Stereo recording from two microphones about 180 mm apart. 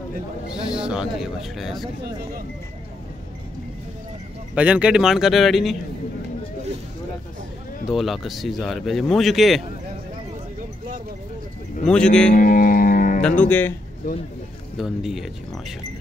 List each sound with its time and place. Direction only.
0.7 s speech: 5° right (ahead or behind)
4.6 s speech: 5° right (ahead or behind)
7.9 s speech: centre (ahead or behind)
11.8 s speech: 5° left (ahead or behind)
12.3 s music: 50° left (ahead or behind)
13.4 s speech: 10° left (ahead or behind)
14.8 s speech: centre (ahead or behind)